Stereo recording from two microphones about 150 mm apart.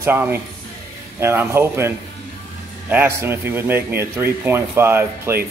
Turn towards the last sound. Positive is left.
turn(degrees=-15)  # may be behind; listen again after turning